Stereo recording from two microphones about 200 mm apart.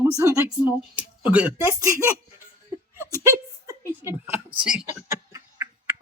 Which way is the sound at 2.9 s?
15° right (ahead or behind).